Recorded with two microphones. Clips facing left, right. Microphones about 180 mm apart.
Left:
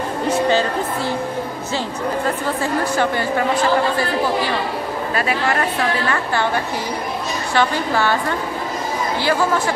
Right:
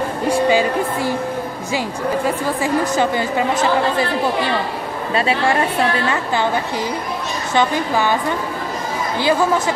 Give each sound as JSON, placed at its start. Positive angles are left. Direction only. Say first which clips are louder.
{"t": 0.3, "sound": "a woman's voice", "louder": "right 2 dB", "side_deg": -10}
{"t": 2.2, "sound": "a woman's voice", "louder": "right 2 dB", "side_deg": -15}
{"t": 5.1, "sound": "a woman's voice", "louder": "right 4 dB", "side_deg": -25}
{"t": 7.5, "sound": "a woman's voice", "louder": "right 1 dB", "side_deg": -15}